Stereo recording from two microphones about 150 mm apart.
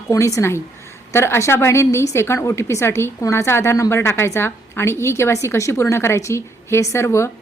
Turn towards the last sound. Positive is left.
turn(degrees=20)  # may be behind; listen again after turning